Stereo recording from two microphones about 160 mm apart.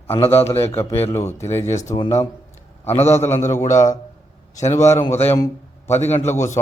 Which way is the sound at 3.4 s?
50° left (ahead or behind).